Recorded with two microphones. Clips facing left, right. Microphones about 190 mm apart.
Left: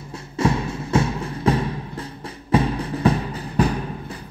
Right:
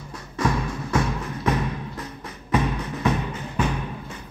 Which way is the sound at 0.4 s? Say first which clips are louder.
Left 3 dB; 25° left (ahead or behind).